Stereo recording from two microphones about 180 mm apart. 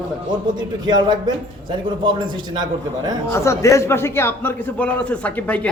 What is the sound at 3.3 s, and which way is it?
A man's voice, 15° left (ahead or behind).